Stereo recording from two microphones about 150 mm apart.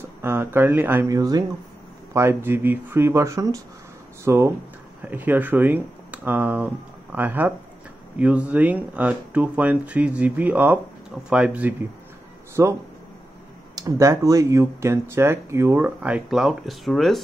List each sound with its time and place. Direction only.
0.2 s speech: 15° right (ahead or behind)
1.1 s speech: 25° right (ahead or behind); by 11.7 s 10° right (ahead or behind)
12.6 s speech: 20° right (ahead or behind)
13.7 s speech: 20° right (ahead or behind); by 17.2 s centre (ahead or behind)